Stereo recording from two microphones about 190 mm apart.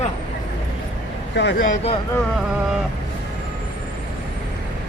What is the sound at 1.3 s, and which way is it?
Speech, 65° left (ahead or behind).